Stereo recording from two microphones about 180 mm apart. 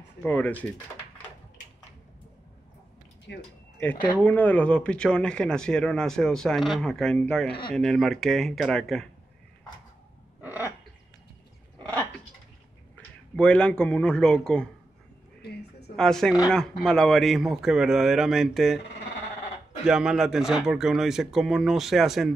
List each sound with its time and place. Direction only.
0.2 s speech: 10° left (ahead or behind)
3.3 s a sound: 75° left (ahead or behind)
4.2 s speech: 10° left (ahead or behind)
12.9 s speech: 5° left (ahead or behind)
16.0 s speech: 5° left (ahead or behind)
19.9 s speech: 5° right (ahead or behind)